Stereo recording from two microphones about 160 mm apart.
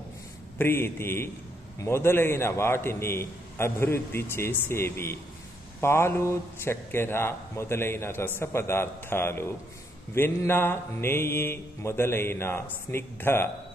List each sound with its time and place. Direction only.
0.6 s a man's voice: 15° left (ahead or behind)